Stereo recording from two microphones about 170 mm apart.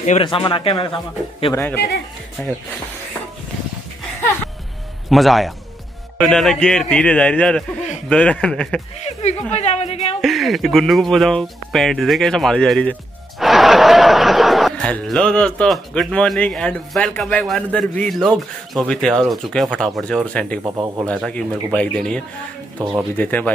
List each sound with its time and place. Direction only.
0.2 s speech: 30° left (ahead or behind)
1.5 s speech: 10° left (ahead or behind)
5.1 s speech: centre (ahead or behind)
9.0 s a woman's voice: 40° left (ahead or behind)
10.2 s speech: centre (ahead or behind)
20.6 s speech: 15° right (ahead or behind)
21.1 s speech: 5° left (ahead or behind)